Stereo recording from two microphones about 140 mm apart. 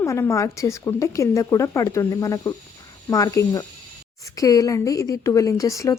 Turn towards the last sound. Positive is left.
turn(degrees=20)  # may be behind; listen again after turning